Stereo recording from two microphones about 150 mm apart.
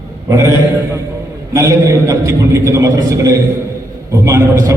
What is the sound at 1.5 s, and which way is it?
A man's voice, 20° right (ahead or behind).